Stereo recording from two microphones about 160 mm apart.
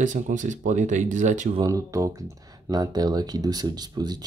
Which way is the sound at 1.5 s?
20° right (ahead or behind).